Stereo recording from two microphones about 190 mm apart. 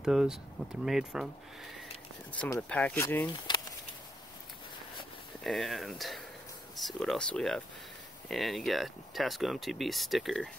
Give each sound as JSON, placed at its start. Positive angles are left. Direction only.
{"t": 0.0, "sound": "speech", "side_deg": 0}
{"t": 3.5, "sound": "a sound", "side_deg": 25}
{"t": 5.4, "sound": "speech", "side_deg": 0}